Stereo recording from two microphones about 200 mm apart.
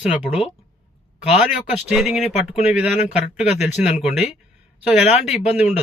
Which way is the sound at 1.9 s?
Centre (ahead or behind).